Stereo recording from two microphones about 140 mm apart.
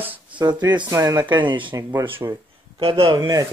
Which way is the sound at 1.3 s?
35° right (ahead or behind).